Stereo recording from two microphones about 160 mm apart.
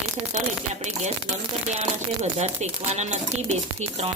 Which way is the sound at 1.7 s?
40° right (ahead or behind).